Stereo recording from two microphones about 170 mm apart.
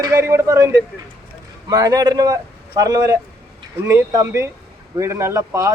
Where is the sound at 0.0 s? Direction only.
15° right (ahead or behind).